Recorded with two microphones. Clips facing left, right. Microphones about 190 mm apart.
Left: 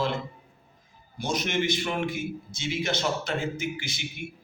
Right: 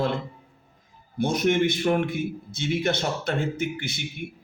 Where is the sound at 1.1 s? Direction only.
60° right (ahead or behind).